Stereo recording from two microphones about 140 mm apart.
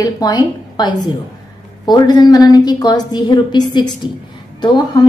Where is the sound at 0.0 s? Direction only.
30° left (ahead or behind).